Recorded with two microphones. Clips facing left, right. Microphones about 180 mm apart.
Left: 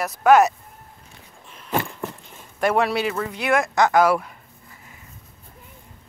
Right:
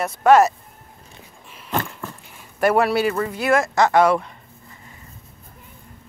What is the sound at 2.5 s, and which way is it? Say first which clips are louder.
Speech: right 3 dB; 5° right (ahead or behind).